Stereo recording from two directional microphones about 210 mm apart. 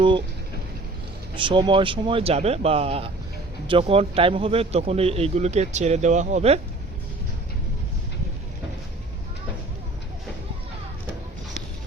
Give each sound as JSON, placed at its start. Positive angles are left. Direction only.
{"t": 1.4, "sound": "a man's voice", "side_deg": -25}